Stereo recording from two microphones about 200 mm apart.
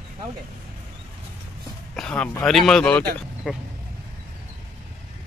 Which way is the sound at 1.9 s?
5° left (ahead or behind).